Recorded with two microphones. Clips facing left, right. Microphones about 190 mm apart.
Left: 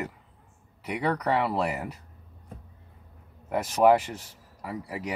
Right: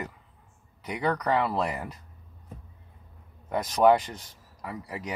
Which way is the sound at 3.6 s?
5° left (ahead or behind).